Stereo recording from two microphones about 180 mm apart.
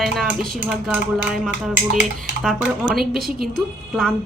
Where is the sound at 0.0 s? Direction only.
Centre (ahead or behind).